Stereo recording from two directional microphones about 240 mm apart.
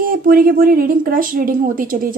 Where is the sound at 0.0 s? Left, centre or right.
Right.